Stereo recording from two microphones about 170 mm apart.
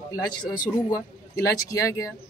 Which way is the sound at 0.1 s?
25° left (ahead or behind).